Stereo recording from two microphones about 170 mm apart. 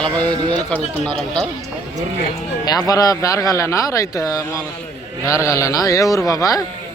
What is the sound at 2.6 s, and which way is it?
Speech, 20° left (ahead or behind).